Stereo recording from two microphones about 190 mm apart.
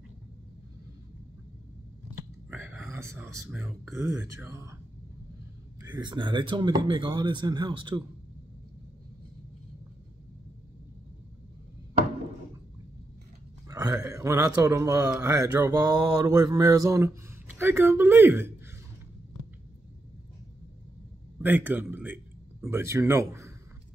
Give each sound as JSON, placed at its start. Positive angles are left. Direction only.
{"t": 2.9, "sound": "speech", "side_deg": -15}
{"t": 5.8, "sound": "speech", "side_deg": -20}
{"t": 13.7, "sound": "a sound", "side_deg": -20}
{"t": 15.2, "sound": "speech", "side_deg": -15}
{"t": 21.4, "sound": "speech", "side_deg": -10}